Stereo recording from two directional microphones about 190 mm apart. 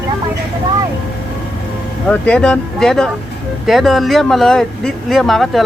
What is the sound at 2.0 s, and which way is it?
Speech, 5° left (ahead or behind).